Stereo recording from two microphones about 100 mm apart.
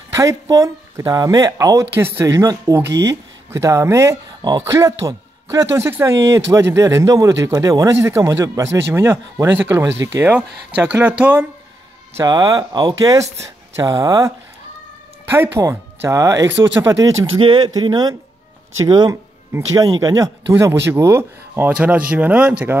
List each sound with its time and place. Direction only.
0.1 s speech: 35° right (ahead or behind)
4.4 s speech: 45° right (ahead or behind)
4.7 s speech: 30° right (ahead or behind)
7.9 s speech: 25° right (ahead or behind)
12.3 s speech: 40° right (ahead or behind)
15.2 s speech: 20° right (ahead or behind)
17.4 s a man's voice: 50° right (ahead or behind); by 22.8 s 15° right (ahead or behind)